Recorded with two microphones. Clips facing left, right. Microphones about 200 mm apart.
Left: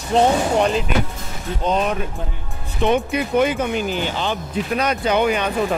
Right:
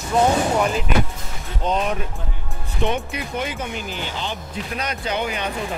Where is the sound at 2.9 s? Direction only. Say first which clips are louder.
Left 8 dB; 55° left (ahead or behind).